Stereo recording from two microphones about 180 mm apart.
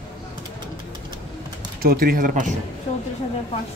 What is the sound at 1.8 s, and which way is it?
Speech, 55° right (ahead or behind).